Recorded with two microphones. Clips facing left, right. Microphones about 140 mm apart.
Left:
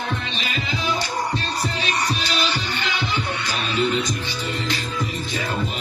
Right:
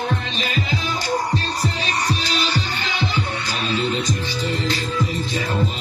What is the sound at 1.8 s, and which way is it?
Music, 40° right (ahead or behind).